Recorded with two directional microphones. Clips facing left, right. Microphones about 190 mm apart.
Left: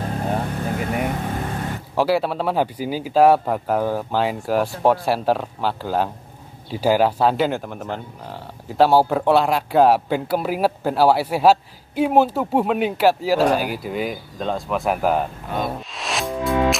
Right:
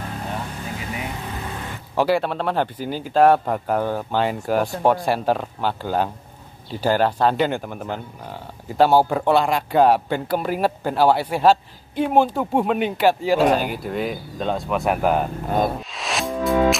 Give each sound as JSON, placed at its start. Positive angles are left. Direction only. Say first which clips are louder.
{"t": 0.3, "sound": "vehicle", "louder": "left 6 dB", "side_deg": 50}
{"t": 2.0, "sound": "speech", "louder": "even", "side_deg": 5}
{"t": 16.0, "sound": "music", "louder": "right 1 dB", "side_deg": 0}